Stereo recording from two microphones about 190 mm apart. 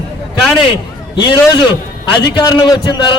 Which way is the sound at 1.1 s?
25° left (ahead or behind).